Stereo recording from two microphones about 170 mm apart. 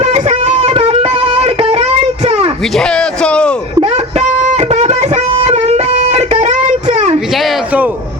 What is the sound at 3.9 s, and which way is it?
Guitar, 40° right (ahead or behind).